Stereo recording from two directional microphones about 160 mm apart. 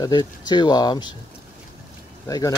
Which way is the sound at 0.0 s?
25° left (ahead or behind).